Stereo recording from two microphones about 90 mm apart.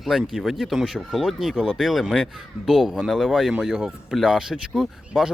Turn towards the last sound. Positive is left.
turn(degrees=-5)  # may be behind; listen again after turning